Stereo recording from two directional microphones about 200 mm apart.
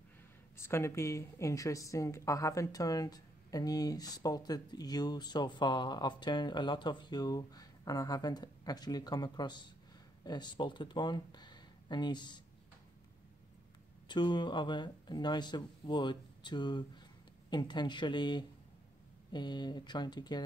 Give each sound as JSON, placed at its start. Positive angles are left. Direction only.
{"t": 0.6, "sound": "a woman's voice", "side_deg": 10}
{"t": 14.0, "sound": "a woman's voice", "side_deg": 20}